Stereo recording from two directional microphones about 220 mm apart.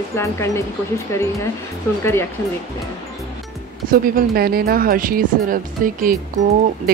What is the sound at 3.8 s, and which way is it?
Speech, 40° right (ahead or behind).